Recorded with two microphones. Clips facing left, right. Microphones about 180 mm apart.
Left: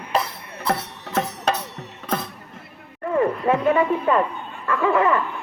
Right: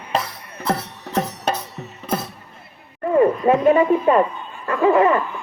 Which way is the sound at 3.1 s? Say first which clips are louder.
Right 5 dB; 25° right (ahead or behind).